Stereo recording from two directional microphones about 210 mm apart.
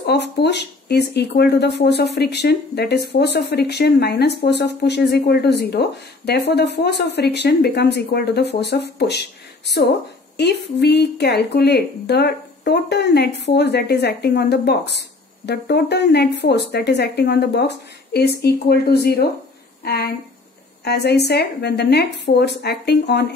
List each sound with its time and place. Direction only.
0.0 s speech: 50° left (ahead or behind)